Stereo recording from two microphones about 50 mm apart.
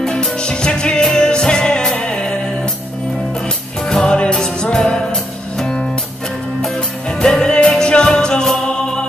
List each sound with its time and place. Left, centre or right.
0.0 s music: centre
3.8 s music: centre